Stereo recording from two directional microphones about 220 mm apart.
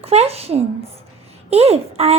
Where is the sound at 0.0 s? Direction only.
25° right (ahead or behind).